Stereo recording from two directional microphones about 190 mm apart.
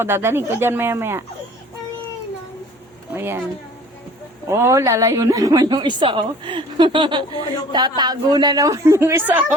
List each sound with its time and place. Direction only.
0.0 s speech: 10° right (ahead or behind)
3.1 s speech: 10° right (ahead or behind)
4.4 s a woman's voice: 15° right (ahead or behind)